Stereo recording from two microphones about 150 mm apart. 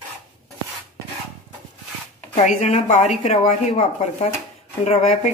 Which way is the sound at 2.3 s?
50° left (ahead or behind).